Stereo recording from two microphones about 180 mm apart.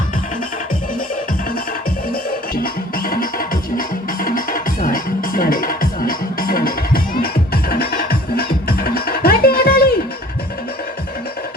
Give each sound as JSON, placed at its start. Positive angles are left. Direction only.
{"t": 2.6, "sound": "music", "side_deg": 55}